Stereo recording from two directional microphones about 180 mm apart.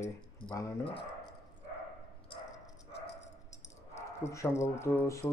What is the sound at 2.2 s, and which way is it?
Dog, 30° left (ahead or behind).